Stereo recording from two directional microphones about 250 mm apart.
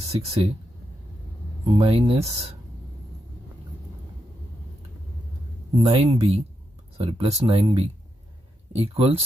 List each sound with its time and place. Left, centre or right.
0.1 s speech: right
1.7 s speech: right
5.9 s speech: right